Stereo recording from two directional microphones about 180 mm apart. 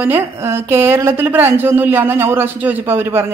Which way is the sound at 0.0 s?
10° right (ahead or behind).